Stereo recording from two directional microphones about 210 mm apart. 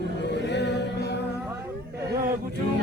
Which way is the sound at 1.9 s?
45° right (ahead or behind).